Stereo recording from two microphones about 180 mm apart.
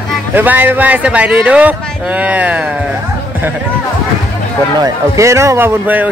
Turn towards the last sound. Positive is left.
turn(degrees=-10)  # may be behind; listen again after turning